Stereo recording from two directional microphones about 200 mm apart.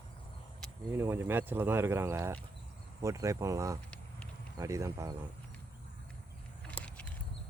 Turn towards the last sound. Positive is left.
turn(degrees=5)  # may be behind; listen again after turning